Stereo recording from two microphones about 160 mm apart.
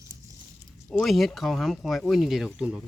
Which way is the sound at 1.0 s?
Centre (ahead or behind).